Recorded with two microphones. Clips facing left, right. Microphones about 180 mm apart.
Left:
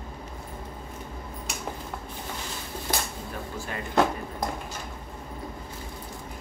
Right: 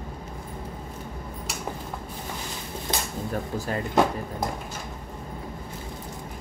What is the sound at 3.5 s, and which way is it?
Speech, 40° right (ahead or behind).